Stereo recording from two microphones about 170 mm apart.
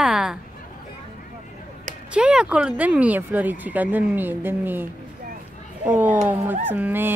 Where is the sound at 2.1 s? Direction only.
5° right (ahead or behind).